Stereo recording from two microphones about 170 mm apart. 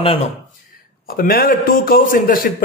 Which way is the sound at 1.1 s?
60° left (ahead or behind).